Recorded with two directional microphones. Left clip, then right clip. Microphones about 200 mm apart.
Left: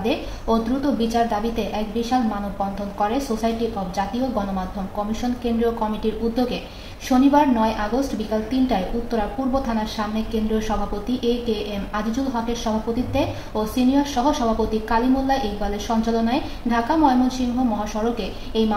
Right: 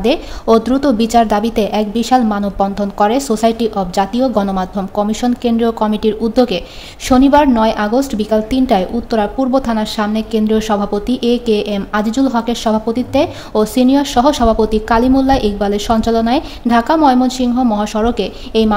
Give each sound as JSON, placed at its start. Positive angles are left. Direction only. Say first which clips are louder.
{"t": 0.0, "sound": "a woman's voice", "louder": "right 9 dB", "side_deg": -60}
{"t": 7.1, "sound": "a woman's voice", "louder": "right 7 dB", "side_deg": -60}